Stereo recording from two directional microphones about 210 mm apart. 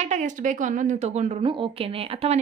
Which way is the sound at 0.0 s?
35° right (ahead or behind).